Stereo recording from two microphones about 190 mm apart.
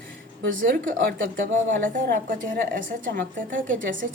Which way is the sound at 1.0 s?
50° right (ahead or behind).